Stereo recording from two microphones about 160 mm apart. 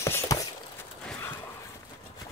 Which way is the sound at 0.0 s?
20° left (ahead or behind).